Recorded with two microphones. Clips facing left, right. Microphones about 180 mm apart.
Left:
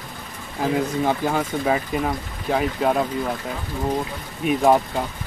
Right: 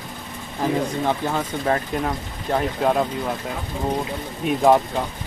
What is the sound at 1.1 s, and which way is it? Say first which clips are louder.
Speech: left 1 dB; 10° left (ahead or behind).